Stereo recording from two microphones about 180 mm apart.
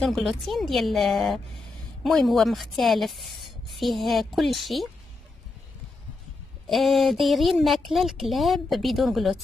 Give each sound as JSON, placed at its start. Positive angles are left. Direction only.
{"t": 0.0, "sound": "a woman's voice", "side_deg": 0}
{"t": 6.7, "sound": "a woman's voice", "side_deg": 0}